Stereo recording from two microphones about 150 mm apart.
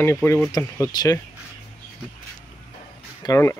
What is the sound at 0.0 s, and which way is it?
Speech, 15° left (ahead or behind).